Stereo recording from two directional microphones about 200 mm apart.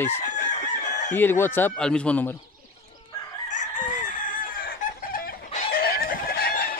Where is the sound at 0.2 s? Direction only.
35° left (ahead or behind).